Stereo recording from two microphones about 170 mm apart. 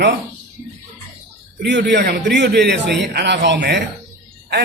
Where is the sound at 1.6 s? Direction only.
85° right.